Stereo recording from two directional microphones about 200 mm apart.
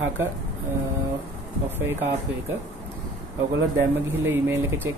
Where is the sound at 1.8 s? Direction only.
10° right (ahead or behind).